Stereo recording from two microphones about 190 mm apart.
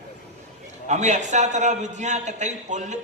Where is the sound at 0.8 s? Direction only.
40° right (ahead or behind).